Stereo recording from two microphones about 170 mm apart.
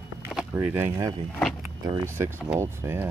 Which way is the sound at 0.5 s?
10° right (ahead or behind).